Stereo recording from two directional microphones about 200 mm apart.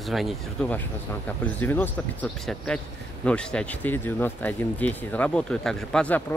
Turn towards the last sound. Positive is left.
turn(degrees=5)  # may be behind; listen again after turning